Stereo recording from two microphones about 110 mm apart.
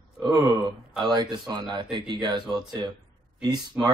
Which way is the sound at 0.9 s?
45° right (ahead or behind).